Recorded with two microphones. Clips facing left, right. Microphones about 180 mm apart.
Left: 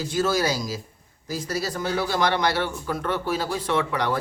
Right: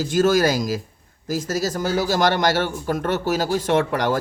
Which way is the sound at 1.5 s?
45° right (ahead or behind).